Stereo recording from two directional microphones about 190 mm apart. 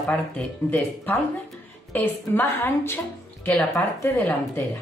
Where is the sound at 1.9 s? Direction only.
10° left (ahead or behind).